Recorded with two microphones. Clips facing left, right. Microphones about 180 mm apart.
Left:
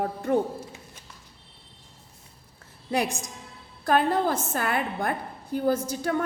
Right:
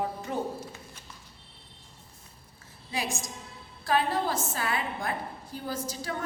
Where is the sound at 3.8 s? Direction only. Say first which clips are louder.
Left 4 dB; 55° left (ahead or behind).